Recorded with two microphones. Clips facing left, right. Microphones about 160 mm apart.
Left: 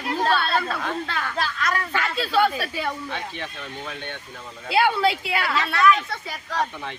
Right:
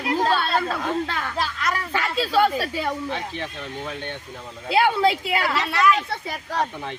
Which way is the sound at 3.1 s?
30° right (ahead or behind).